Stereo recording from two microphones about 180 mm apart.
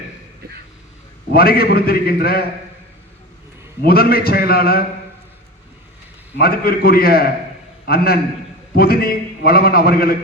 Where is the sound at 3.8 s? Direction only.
60° left (ahead or behind).